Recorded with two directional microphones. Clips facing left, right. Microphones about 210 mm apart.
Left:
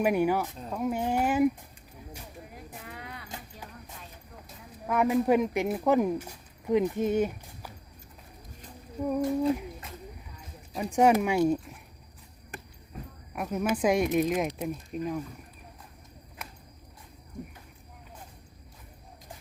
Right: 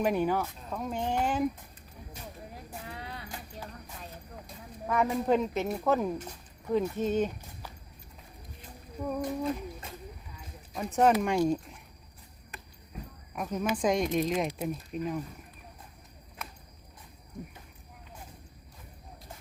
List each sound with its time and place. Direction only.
0.0 s speech: 10° left (ahead or behind)
2.8 s vehicle: 30° right (ahead or behind)
3.2 s a sound: 20° left (ahead or behind)
4.4 s speech: 5° left (ahead or behind)
9.0 s speech: 15° left (ahead or behind)
10.8 s speech: 15° left (ahead or behind)
13.3 s speech: 5° left (ahead or behind)